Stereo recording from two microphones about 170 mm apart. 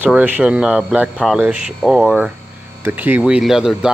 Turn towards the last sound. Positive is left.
turn(degrees=-5)  # may be behind; listen again after turning